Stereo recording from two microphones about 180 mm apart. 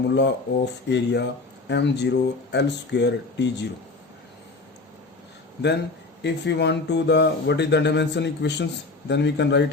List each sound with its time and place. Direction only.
0.1 s speech: 75° left (ahead or behind)
6.2 s speech: 70° left (ahead or behind)